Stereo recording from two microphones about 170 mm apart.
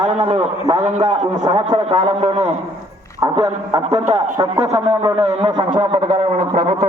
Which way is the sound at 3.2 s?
20° right (ahead or behind).